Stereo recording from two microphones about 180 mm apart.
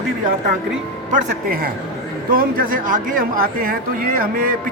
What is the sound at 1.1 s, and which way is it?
Speech, 50° right (ahead or behind).